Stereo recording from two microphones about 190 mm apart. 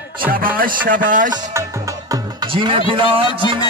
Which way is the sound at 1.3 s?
15° right (ahead or behind).